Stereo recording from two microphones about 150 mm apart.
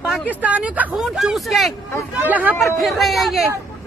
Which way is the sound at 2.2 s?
10° right (ahead or behind).